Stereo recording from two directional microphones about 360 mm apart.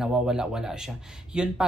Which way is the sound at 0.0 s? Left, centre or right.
Centre.